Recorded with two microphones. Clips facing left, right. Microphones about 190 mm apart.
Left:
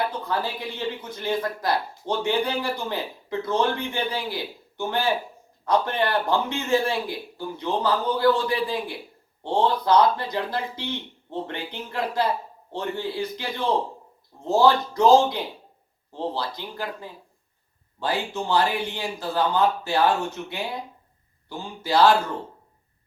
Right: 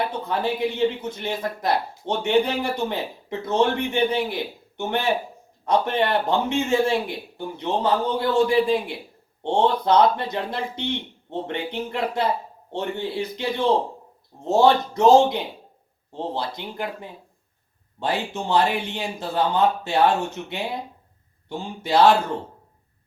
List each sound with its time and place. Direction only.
0.0 s a man's voice: 25° right (ahead or behind)
21.5 s a man's voice: 25° right (ahead or behind)